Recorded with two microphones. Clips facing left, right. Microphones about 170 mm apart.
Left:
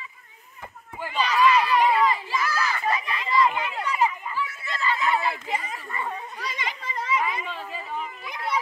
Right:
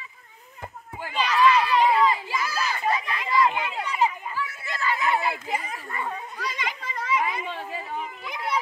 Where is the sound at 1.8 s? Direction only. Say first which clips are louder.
Right 1 dB; 10° right (ahead or behind).